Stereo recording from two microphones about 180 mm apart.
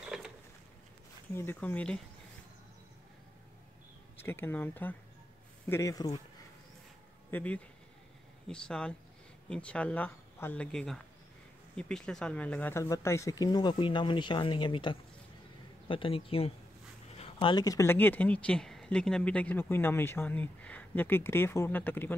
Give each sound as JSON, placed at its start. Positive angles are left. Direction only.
{"t": 0.0, "sound": "a sound", "side_deg": -5}
{"t": 1.3, "sound": "speech", "side_deg": 10}
{"t": 4.2, "sound": "speech", "side_deg": 10}
{"t": 7.2, "sound": "speech", "side_deg": 10}